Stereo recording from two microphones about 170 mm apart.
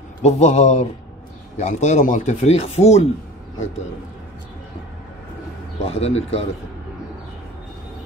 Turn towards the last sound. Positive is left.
turn(degrees=40)  # may be behind; listen again after turning